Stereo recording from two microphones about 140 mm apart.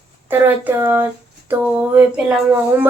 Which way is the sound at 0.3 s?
15° right (ahead or behind).